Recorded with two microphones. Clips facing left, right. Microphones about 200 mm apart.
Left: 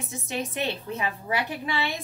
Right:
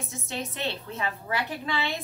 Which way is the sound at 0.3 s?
15° left (ahead or behind).